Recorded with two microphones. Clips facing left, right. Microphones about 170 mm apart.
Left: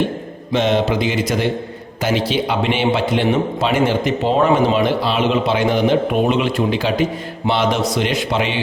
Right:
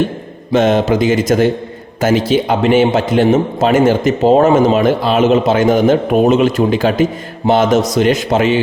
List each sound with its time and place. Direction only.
0.5 s a man's voice: 50° right (ahead or behind)